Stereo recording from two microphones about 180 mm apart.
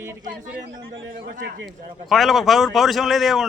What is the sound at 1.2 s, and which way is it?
Speech, 50° right (ahead or behind).